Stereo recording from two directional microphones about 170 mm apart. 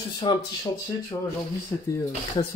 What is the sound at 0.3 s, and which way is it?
Speech, 25° left (ahead or behind).